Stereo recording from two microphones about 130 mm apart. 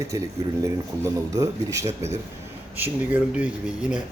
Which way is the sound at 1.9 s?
60° right (ahead or behind).